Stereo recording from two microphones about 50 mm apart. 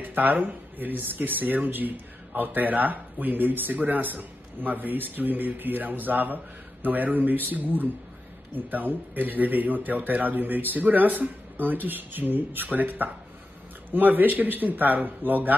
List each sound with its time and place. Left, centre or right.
0.1 s speech: right